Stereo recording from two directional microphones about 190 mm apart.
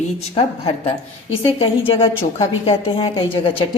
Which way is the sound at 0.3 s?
30° left (ahead or behind).